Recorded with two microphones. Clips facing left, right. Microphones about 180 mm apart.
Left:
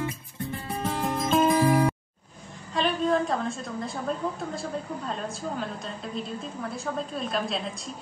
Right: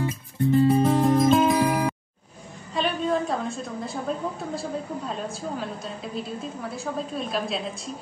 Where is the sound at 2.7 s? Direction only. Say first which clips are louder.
Even; centre (ahead or behind).